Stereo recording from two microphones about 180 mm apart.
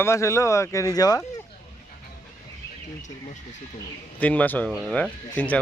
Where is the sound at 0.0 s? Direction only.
15° left (ahead or behind).